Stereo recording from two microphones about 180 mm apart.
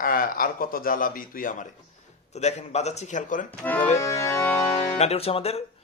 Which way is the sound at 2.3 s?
40° left (ahead or behind).